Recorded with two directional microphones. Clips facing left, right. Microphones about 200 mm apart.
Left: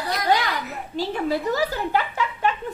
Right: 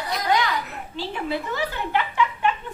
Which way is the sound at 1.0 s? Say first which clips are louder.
Left 4 dB; 40° left (ahead or behind).